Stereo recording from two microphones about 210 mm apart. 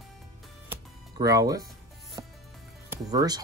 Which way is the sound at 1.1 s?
15° right (ahead or behind).